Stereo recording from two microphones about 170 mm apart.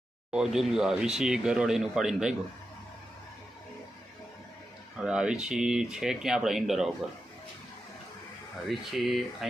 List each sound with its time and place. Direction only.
0.3 s speech: 5° right (ahead or behind)
4.9 s speech: 5° right (ahead or behind)
8.7 s speech: centre (ahead or behind)